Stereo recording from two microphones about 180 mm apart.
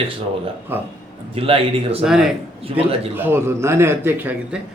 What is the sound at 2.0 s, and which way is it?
Speech, centre (ahead or behind).